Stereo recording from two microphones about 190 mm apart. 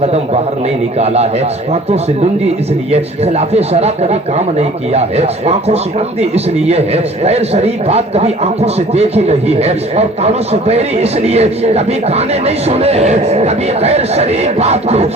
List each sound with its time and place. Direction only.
0.9 s speech: 35° right (ahead or behind)
2.9 s speech: 35° right (ahead or behind)